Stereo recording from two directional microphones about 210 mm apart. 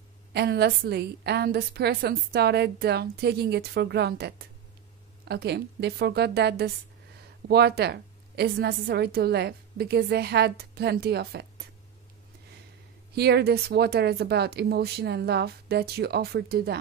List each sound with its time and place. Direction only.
0.3 s a woman's voice: 50° right (ahead or behind)
13.1 s a woman's voice: 50° right (ahead or behind)